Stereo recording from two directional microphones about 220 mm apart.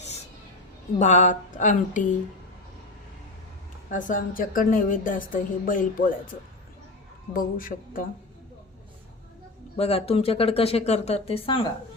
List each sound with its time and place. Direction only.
0.9 s a woman's voice: 30° left (ahead or behind)
3.8 s a woman's voice: 35° left (ahead or behind)
7.3 s a woman's voice: 40° left (ahead or behind)
9.7 s speech: 25° left (ahead or behind)